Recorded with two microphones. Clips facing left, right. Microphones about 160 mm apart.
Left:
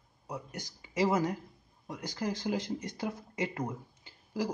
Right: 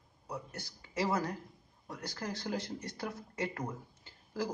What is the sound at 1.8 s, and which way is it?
A man's voice, 20° left (ahead or behind).